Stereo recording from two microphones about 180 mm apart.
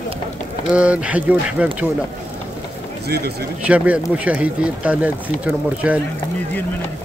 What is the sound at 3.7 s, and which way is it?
Speech, 5° right (ahead or behind).